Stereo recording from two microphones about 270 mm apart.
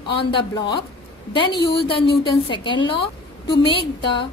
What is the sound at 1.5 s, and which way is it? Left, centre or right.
Speech, left.